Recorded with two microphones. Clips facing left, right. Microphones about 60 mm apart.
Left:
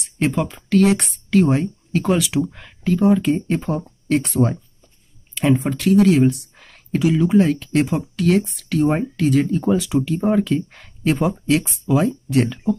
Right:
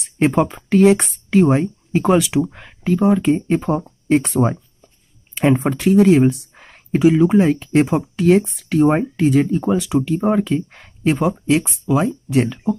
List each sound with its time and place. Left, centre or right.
0.5 s speech: right
4.4 s speech: right; by 12.7 s centre